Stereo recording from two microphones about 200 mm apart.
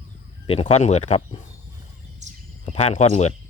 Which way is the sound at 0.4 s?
30° left (ahead or behind).